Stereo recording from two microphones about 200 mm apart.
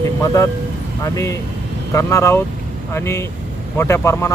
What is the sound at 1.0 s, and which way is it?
Speech, 15° left (ahead or behind).